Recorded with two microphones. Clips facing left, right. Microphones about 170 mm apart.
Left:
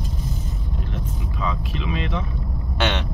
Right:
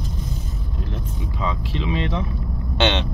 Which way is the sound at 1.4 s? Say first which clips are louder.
Right 2 dB; 30° right (ahead or behind).